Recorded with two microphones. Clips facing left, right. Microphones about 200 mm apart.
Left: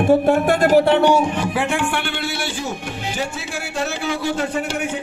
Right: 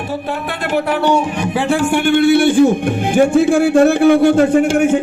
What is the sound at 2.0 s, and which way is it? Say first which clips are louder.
Speech: right 15 dB; 50° right (ahead or behind).